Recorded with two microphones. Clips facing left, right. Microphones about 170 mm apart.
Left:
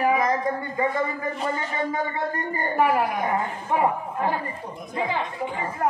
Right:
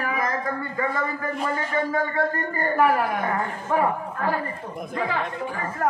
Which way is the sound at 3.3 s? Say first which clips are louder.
Even; 20° left (ahead or behind).